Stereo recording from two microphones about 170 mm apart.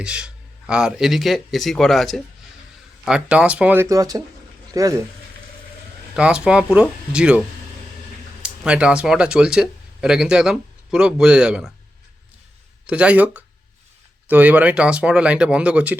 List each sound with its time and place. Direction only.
0.0 s a man's voice: 5° right (ahead or behind)
6.1 s speech: 5° right (ahead or behind)
12.9 s speech: 5° right (ahead or behind)